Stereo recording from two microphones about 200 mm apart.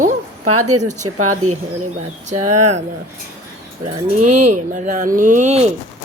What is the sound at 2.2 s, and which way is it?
Speech, 35° right (ahead or behind).